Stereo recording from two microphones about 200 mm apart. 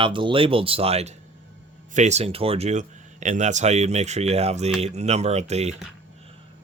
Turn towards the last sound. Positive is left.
turn(degrees=-35)  # may be behind; listen again after turning